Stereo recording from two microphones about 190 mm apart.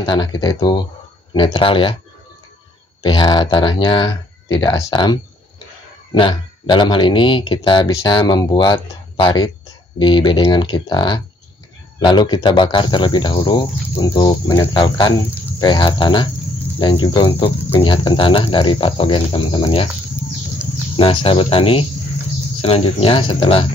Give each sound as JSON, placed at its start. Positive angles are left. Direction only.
{"t": 0.0, "sound": "speech", "side_deg": 25}
{"t": 3.0, "sound": "speech", "side_deg": 20}
{"t": 20.9, "sound": "speech", "side_deg": 25}